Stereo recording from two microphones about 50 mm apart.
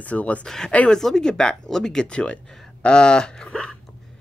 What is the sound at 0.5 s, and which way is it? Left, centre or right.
Speech, centre.